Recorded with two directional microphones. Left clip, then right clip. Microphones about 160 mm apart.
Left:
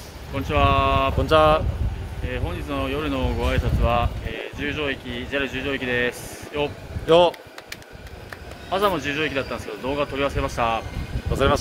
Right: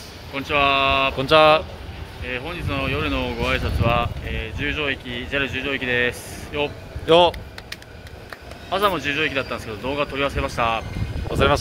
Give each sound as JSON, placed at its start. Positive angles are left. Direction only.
{"t": 0.3, "sound": "speech", "side_deg": 25}
{"t": 1.1, "sound": "speech", "side_deg": -10}
{"t": 2.2, "sound": "speech", "side_deg": 20}
{"t": 7.1, "sound": "speech", "side_deg": -10}
{"t": 8.6, "sound": "speech", "side_deg": 25}